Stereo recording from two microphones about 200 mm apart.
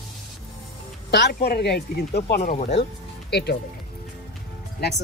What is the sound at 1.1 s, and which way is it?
Speech, 55° left (ahead or behind).